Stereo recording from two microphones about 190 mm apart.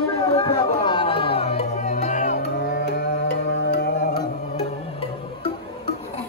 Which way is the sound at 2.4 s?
60° left (ahead or behind).